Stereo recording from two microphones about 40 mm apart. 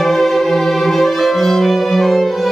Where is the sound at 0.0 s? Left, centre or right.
Centre.